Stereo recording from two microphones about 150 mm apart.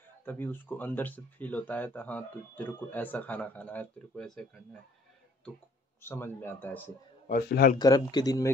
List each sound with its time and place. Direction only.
0.2 s speech: 10° left (ahead or behind)
6.0 s speech: 15° left (ahead or behind)
7.2 s a man's voice: 85° left
7.8 s speech: 25° left (ahead or behind)